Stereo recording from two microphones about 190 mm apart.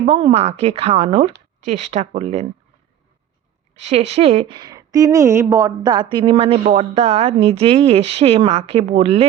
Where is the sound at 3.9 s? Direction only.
35° right (ahead or behind).